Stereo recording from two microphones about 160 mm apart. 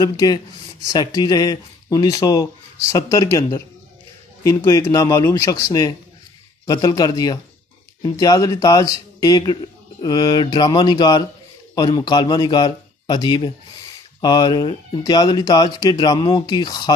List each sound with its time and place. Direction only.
0.0 s a man's voice: 25° left (ahead or behind)
4.6 s a man's voice: 20° left (ahead or behind)